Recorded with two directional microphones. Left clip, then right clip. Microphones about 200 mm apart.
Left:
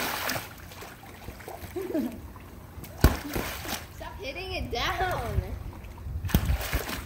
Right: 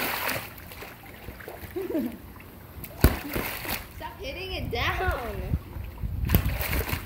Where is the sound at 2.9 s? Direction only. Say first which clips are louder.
Right 1 dB; 5° right (ahead or behind).